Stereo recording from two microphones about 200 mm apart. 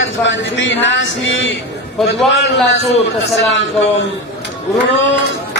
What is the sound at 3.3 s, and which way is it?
Speech, 70° left (ahead or behind).